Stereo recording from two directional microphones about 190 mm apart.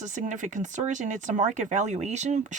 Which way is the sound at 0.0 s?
40° right (ahead or behind).